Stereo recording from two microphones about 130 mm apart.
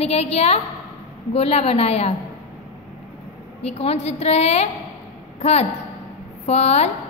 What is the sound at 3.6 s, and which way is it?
A woman's voice, 50° left (ahead or behind).